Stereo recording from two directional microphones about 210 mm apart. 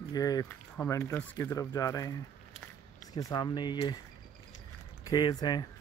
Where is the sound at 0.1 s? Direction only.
15° left (ahead or behind).